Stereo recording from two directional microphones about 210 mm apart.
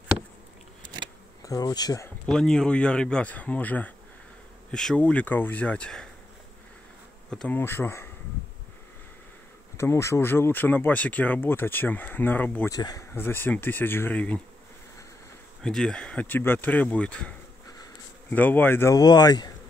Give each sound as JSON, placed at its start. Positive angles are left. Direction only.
{"t": 1.4, "sound": "speech", "side_deg": 15}
{"t": 2.2, "sound": "speech", "side_deg": 5}
{"t": 7.2, "sound": "speech", "side_deg": 5}
{"t": 9.8, "sound": "speech", "side_deg": 15}
{"t": 15.6, "sound": "speech", "side_deg": 5}
{"t": 18.3, "sound": "speech", "side_deg": 10}